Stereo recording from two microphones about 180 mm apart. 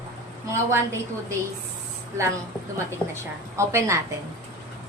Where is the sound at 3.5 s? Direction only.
15° right (ahead or behind).